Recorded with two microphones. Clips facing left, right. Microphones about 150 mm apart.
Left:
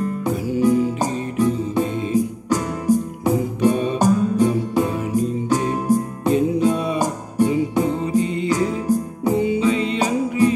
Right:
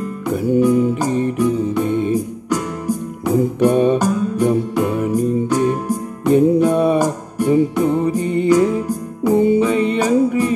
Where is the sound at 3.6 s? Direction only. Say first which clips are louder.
Right 5 dB; 60° right (ahead or behind).